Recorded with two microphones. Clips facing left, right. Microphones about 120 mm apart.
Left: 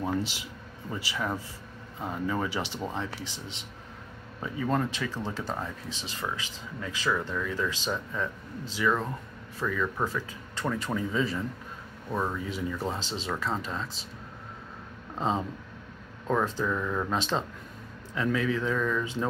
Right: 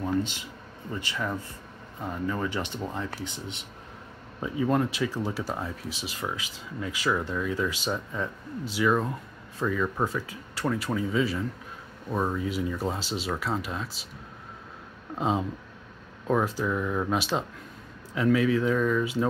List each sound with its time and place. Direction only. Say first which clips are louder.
0.9 s speech: even; 5° left (ahead or behind)
2.9 s speech: right 1 dB; centre (ahead or behind)
4.4 s speech: right 3 dB; 10° right (ahead or behind)
15.1 s speech: right 2 dB; 10° right (ahead or behind)